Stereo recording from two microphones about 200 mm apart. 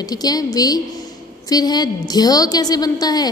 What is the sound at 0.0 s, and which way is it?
A woman's voice, 20° left (ahead or behind).